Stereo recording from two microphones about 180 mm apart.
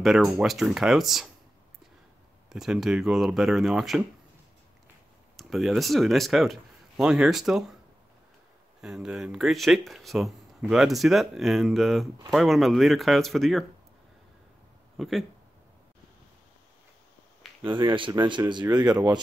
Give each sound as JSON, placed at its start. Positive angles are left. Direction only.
{"t": 0.0, "sound": "speech", "side_deg": 0}
{"t": 2.5, "sound": "speech", "side_deg": -5}
{"t": 5.3, "sound": "speech", "side_deg": 0}
{"t": 8.8, "sound": "speech", "side_deg": 0}
{"t": 15.0, "sound": "speech", "side_deg": 0}
{"t": 17.6, "sound": "speech", "side_deg": -25}